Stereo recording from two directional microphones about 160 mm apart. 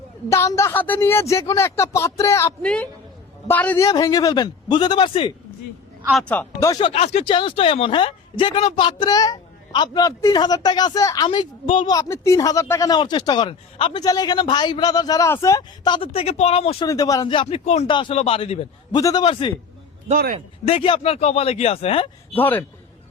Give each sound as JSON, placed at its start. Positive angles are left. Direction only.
{"t": 0.3, "sound": "speech", "side_deg": 20}
{"t": 2.6, "sound": "speech", "side_deg": 5}
{"t": 3.8, "sound": "a woman's voice", "side_deg": 20}
{"t": 6.1, "sound": "speech", "side_deg": 5}
{"t": 6.7, "sound": "a woman's voice", "side_deg": 30}
{"t": 11.3, "sound": "a woman's voice", "side_deg": 35}
{"t": 16.8, "sound": "speech", "side_deg": 20}
{"t": 18.9, "sound": "a woman's voice", "side_deg": 25}
{"t": 20.7, "sound": "speech", "side_deg": 35}
{"t": 22.4, "sound": "speech", "side_deg": 10}